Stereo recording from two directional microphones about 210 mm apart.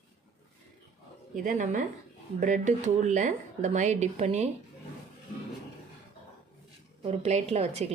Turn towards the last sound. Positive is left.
turn(degrees=-30)  # may be behind; listen again after turning